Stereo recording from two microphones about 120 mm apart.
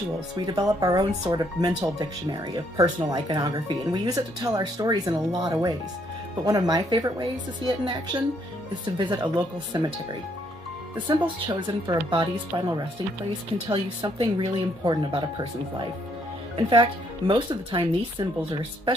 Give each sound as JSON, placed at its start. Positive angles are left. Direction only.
{"t": 0.5, "sound": "speech", "side_deg": -30}
{"t": 11.1, "sound": "speech", "side_deg": -45}
{"t": 13.7, "sound": "speech", "side_deg": -45}